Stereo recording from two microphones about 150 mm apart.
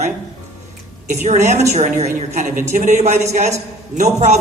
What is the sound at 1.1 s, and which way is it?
A woman's voice, 50° right (ahead or behind).